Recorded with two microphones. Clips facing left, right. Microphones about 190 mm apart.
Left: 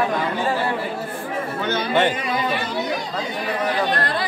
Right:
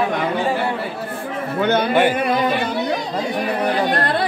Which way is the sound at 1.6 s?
60° right (ahead or behind).